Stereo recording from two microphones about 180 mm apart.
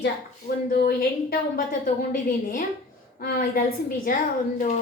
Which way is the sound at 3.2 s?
55° left (ahead or behind).